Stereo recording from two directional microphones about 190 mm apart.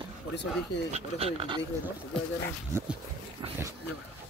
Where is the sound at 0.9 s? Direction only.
30° right (ahead or behind).